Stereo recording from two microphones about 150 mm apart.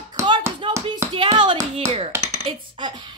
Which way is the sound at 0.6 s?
35° right (ahead or behind).